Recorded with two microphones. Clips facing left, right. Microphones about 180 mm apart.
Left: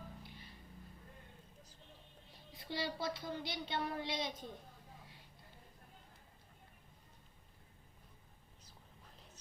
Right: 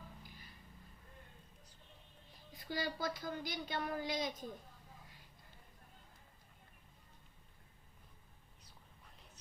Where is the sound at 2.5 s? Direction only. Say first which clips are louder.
Right 1 dB; 25° left (ahead or behind).